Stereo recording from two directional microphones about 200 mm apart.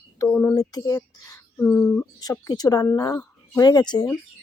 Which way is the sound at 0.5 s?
20° left (ahead or behind).